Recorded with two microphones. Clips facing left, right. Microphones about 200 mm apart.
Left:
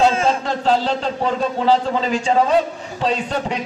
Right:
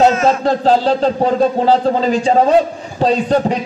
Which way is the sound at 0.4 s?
40° right (ahead or behind).